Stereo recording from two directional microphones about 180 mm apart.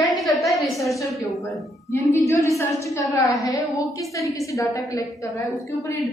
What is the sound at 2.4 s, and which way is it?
Speech, 15° left (ahead or behind).